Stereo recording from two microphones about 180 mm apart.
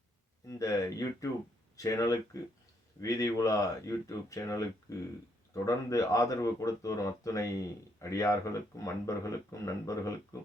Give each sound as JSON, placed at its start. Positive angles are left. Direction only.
{"t": 0.4, "sound": "speech", "side_deg": 20}